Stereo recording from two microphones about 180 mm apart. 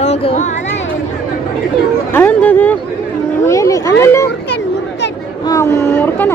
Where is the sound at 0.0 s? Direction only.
35° left (ahead or behind).